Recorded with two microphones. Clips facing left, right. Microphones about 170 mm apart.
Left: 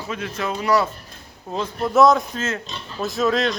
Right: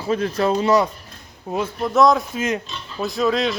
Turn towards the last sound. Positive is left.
turn(degrees=0)  # may be behind; listen again after turning